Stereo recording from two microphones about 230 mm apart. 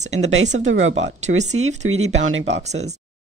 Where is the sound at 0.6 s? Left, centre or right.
Right.